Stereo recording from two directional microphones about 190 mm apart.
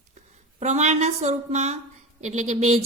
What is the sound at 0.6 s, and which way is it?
A woman's voice, 35° right (ahead or behind).